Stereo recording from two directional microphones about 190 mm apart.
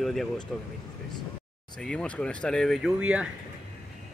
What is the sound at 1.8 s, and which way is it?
Speech, 5° left (ahead or behind).